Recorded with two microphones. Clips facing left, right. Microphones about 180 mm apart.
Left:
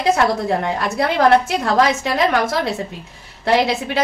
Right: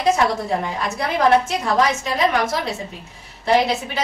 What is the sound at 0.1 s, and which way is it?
A woman's voice, 70° left (ahead or behind).